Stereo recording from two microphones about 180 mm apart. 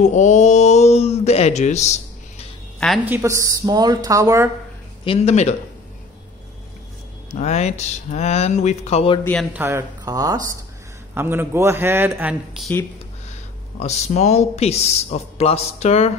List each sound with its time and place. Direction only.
0.0 s speech: 40° left (ahead or behind)
3.1 s speech: 15° right (ahead or behind)
5.0 s speech: 35° left (ahead or behind)
7.3 s speech: 40° left (ahead or behind)
9.2 s a man's voice: 5° left (ahead or behind)
9.5 s a man's voice: 10° right (ahead or behind)
13.7 s speech: 35° left (ahead or behind)